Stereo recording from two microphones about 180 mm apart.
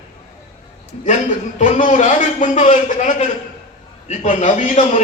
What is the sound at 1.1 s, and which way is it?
A man's voice, 45° left (ahead or behind).